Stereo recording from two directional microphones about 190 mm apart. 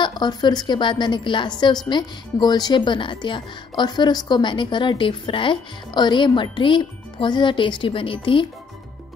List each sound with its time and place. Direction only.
0.0 s speech: 20° left (ahead or behind)